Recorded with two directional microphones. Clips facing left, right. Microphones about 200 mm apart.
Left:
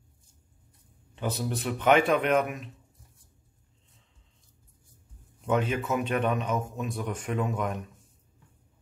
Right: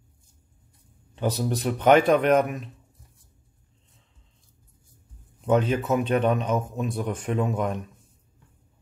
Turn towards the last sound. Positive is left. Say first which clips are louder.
# right 4 dB
turn(degrees=-30)  # may be behind; listen again after turning